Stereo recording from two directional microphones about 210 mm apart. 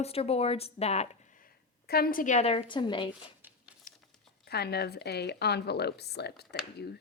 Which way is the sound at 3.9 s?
40° left (ahead or behind).